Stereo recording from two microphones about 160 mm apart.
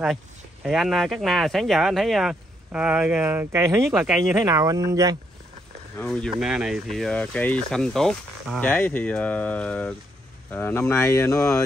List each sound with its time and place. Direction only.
0.7 s speech: centre (ahead or behind)
3.8 s speech: 5° right (ahead or behind)
4.2 s speech: 20° right (ahead or behind)
5.9 s speech: 5° left (ahead or behind)